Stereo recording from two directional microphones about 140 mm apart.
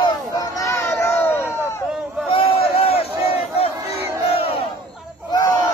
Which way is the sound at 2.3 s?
45° left (ahead or behind).